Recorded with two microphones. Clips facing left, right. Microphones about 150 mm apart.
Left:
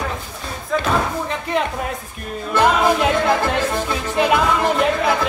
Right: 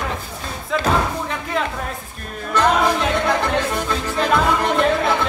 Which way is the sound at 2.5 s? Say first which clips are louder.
Left 1 dB; 15° left (ahead or behind).